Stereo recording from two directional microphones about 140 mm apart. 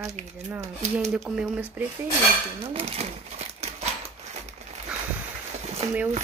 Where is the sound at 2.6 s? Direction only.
45° right (ahead or behind).